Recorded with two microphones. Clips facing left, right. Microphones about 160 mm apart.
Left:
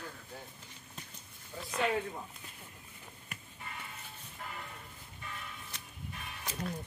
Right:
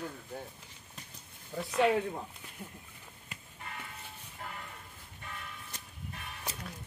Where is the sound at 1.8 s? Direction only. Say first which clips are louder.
Right 5 dB; 10° right (ahead or behind).